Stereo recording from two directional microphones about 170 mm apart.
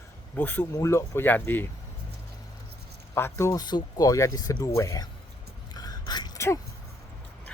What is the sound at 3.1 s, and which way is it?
Speech, 15° left (ahead or behind).